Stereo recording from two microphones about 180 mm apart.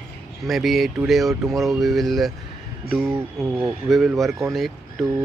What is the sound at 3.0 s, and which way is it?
Speech, 15° right (ahead or behind).